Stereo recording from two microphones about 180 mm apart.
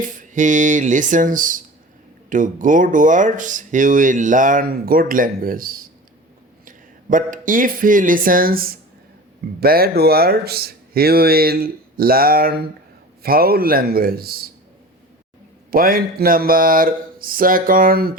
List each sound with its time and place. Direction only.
0.0 s speech: 45° right (ahead or behind)
15.7 s speech: 55° right (ahead or behind)